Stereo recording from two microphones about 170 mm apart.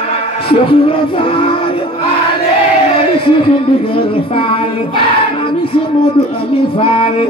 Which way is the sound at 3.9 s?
30° left (ahead or behind).